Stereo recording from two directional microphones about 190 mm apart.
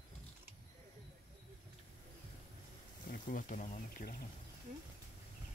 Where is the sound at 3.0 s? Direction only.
45° left (ahead or behind).